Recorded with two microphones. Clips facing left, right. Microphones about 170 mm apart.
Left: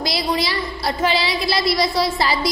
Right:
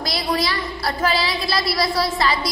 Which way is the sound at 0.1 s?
25° left (ahead or behind).